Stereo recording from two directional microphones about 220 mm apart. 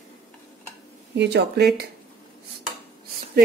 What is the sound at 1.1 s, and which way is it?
Speech, 50° right (ahead or behind).